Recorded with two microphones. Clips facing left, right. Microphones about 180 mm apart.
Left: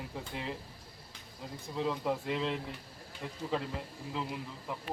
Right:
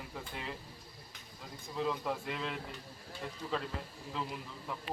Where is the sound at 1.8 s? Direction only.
25° left (ahead or behind).